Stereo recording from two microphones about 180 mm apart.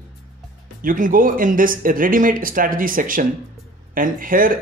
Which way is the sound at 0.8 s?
50° right (ahead or behind).